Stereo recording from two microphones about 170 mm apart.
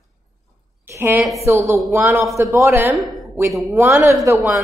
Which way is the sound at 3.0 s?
Centre (ahead or behind).